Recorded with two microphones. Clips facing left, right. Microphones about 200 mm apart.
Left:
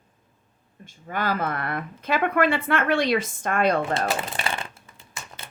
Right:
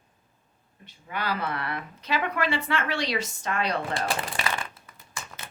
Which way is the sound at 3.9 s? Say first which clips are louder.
Left 4 dB; 25° left (ahead or behind).